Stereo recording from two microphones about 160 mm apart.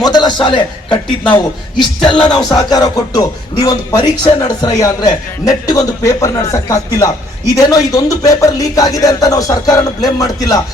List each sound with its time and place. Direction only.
0.0 s music: 25° left (ahead or behind)